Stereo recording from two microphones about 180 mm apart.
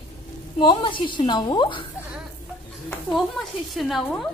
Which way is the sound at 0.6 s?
25° left (ahead or behind).